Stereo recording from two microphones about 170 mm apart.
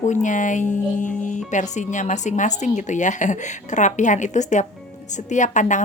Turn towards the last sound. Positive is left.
turn(degrees=45)  # may be behind; listen again after turning